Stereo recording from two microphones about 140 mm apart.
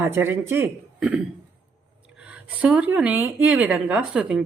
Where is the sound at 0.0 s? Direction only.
20° right (ahead or behind).